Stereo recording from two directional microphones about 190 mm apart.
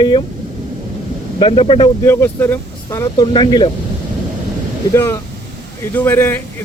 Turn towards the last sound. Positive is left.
turn(degrees=10)  # may be behind; listen again after turning